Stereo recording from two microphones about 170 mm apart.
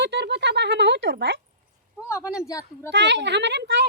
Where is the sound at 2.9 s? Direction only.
90° right.